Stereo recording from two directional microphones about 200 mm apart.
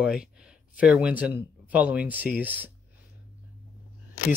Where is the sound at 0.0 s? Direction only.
5° right (ahead or behind).